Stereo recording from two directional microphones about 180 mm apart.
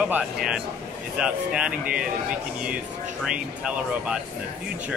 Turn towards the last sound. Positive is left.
turn(degrees=-5)  # may be behind; listen again after turning